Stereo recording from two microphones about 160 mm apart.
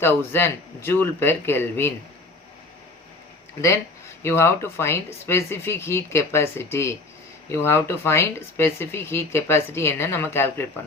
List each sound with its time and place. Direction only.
0.0 s speech: 15° left (ahead or behind)
4.2 s speech: 15° left (ahead or behind)